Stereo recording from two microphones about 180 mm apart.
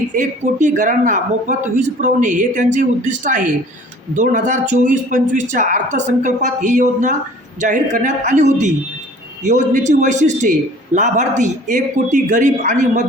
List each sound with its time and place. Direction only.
0.1 s a man's voice: 45° right (ahead or behind)